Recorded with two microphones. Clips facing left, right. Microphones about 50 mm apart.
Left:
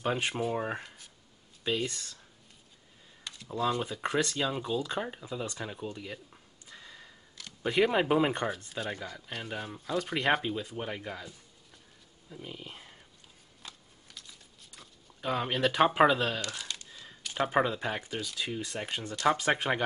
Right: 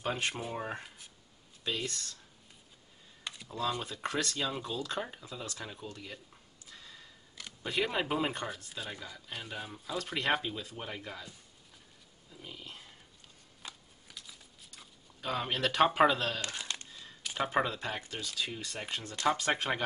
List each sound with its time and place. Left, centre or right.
0.0 s speech: centre
0.8 s speech: centre
1.9 s speech: centre
3.4 s speech: centre
7.6 s speech: left
9.4 s speech: centre
12.4 s speech: centre
13.6 s shuffling cards: centre
15.1 s speech: centre
16.3 s speech: right
16.9 s a sound: centre
17.2 s a sound: centre
17.5 s speech: centre